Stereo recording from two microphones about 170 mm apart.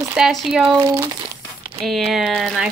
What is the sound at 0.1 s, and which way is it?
Speech, centre (ahead or behind).